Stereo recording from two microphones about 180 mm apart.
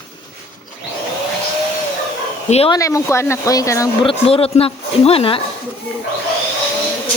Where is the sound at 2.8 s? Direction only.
15° left (ahead or behind).